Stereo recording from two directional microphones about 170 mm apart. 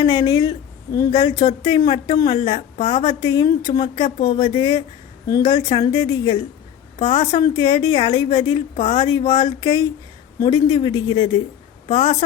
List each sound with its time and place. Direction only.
0.0 s a woman's voice: 25° left (ahead or behind)